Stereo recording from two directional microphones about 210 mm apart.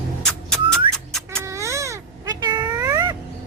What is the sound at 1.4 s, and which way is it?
Baby cry, 15° right (ahead or behind).